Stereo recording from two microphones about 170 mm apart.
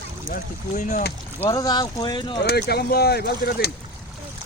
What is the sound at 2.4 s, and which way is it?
Speech, 70° left (ahead or behind).